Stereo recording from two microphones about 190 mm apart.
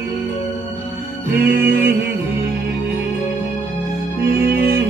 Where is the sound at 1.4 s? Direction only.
55° right (ahead or behind).